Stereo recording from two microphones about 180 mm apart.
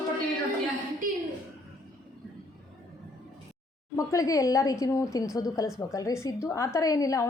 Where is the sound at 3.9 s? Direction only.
15° left (ahead or behind).